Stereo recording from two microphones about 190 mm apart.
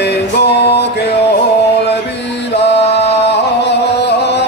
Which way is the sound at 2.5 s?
65° left (ahead or behind).